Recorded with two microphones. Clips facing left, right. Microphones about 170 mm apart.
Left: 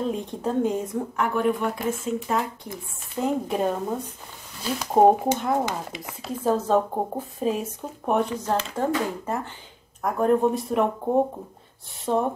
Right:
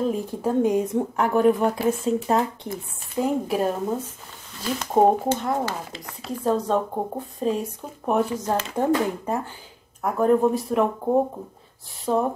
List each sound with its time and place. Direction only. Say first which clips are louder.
0.0 s speech: right 3 dB; 5° right (ahead or behind)
1.1 s speech: right 5 dB; 40° right (ahead or behind)
3.2 s speech: right 2 dB; 5° right (ahead or behind)
5.7 s speech: left 1 dB; 15° left (ahead or behind)
6.2 s speech: even; 5° left (ahead or behind)
8.7 s speech: right 3 dB; 15° right (ahead or behind)
10.0 s speech: right 2 dB; centre (ahead or behind)